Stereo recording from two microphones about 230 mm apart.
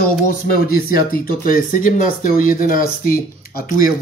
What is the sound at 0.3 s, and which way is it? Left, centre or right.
A man's voice, left.